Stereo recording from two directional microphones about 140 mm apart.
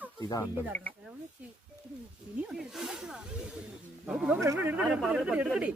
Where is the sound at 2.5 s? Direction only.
Centre (ahead or behind).